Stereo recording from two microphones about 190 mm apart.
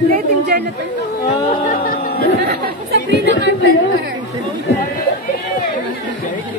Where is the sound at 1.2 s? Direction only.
30° left (ahead or behind).